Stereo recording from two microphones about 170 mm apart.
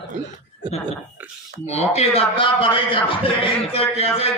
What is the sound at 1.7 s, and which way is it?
A man's voice, 40° left (ahead or behind).